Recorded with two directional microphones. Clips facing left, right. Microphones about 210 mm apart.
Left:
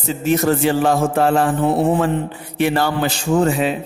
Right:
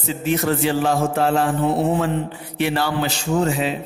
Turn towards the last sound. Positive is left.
turn(degrees=50)  # may be behind; listen again after turning